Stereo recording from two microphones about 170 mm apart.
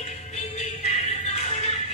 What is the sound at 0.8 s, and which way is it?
Music, 40° left (ahead or behind).